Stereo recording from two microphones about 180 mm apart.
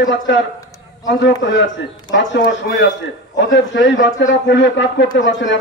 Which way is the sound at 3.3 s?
90° left.